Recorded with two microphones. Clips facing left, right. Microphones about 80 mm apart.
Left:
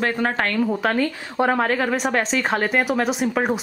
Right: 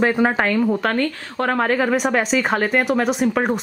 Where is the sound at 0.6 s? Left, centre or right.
Centre.